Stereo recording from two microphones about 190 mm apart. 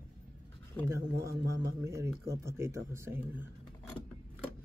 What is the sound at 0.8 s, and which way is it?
Speech, 15° right (ahead or behind).